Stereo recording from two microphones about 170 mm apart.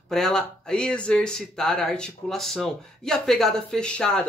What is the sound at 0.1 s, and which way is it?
A man's voice, 5° left (ahead or behind).